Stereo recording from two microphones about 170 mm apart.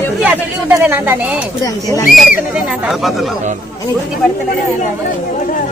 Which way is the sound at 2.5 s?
5° right (ahead or behind).